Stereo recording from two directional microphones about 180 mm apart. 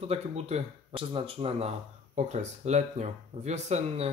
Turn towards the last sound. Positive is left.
turn(degrees=-40)  # may be behind; listen again after turning